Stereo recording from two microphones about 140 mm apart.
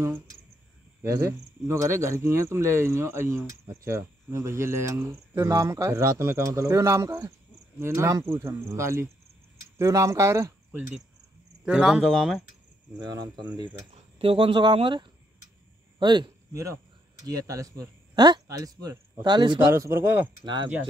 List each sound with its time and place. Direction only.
1.0 s cricket: 20° right (ahead or behind)
9.8 s speech: 20° right (ahead or behind)
11.6 s speech: 5° right (ahead or behind)
13.9 s a man's voice: 45° right (ahead or behind)
17.3 s cricket: 25° right (ahead or behind)
19.7 s speech: 20° right (ahead or behind)